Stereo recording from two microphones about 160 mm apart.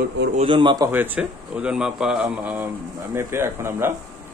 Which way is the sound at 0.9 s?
10° right (ahead or behind).